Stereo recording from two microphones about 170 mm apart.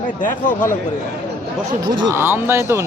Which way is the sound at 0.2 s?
50° left (ahead or behind).